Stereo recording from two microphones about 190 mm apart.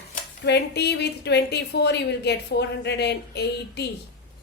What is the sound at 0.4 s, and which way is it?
A woman's voice, 60° left (ahead or behind).